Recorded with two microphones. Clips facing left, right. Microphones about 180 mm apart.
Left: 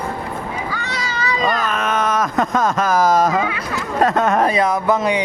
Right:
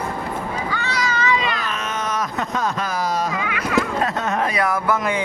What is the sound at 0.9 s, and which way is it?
Cat, 30° left (ahead or behind).